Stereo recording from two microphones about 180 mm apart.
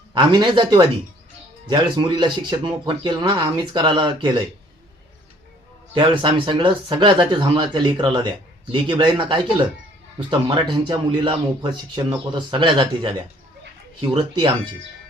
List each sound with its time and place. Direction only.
0.1 s speech: 25° right (ahead or behind)
5.9 s speech: 30° right (ahead or behind)